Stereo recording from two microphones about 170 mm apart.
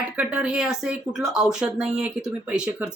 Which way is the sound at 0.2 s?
5° right (ahead or behind).